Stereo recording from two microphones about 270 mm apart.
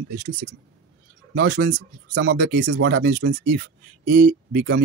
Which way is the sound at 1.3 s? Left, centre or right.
Right.